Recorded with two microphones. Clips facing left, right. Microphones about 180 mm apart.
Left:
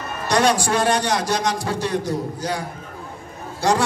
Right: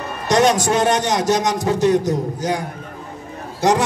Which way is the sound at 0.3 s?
20° right (ahead or behind).